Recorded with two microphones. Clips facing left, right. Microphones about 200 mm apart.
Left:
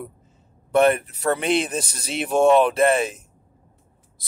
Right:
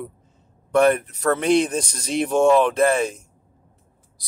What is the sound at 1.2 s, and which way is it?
Speech, 5° left (ahead or behind).